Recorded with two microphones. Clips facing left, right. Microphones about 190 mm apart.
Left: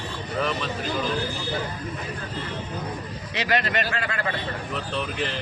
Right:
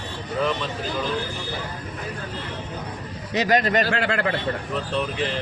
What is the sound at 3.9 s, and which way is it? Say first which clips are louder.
Speech: right 5 dB; 65° right (ahead or behind).